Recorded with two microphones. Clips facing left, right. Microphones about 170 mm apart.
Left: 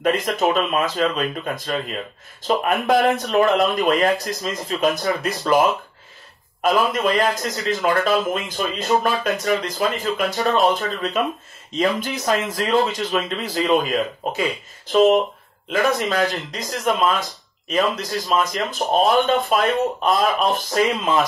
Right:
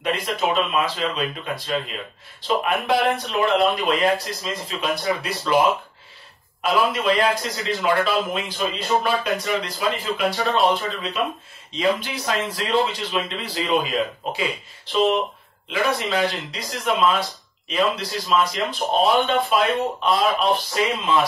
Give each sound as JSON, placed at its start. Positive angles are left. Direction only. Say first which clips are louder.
{"t": 0.0, "sound": "a man's voice", "louder": "left 4 dB", "side_deg": 45}
{"t": 6.6, "sound": "a man's voice", "louder": "left 2 dB", "side_deg": 45}